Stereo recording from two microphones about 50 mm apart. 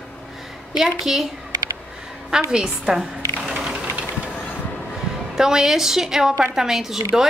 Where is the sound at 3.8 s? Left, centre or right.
Right.